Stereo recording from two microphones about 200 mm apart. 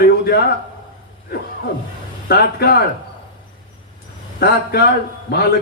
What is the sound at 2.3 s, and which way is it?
Speech, 50° left (ahead or behind).